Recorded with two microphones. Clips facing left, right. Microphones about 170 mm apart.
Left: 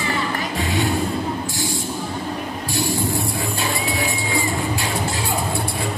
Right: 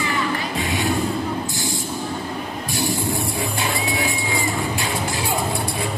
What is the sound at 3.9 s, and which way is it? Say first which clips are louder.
Vehicle: left 1 dB; 20° right (ahead or behind).